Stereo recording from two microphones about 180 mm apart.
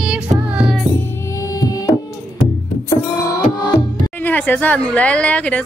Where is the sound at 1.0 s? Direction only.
15° left (ahead or behind).